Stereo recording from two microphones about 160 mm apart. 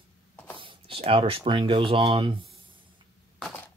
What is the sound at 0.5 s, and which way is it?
Speech, 35° right (ahead or behind).